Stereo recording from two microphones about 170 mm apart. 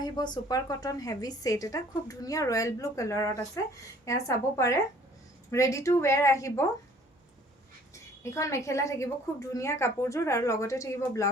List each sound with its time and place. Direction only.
0.0 s a woman's voice: 25° left (ahead or behind)
7.9 s a woman's voice: 15° left (ahead or behind)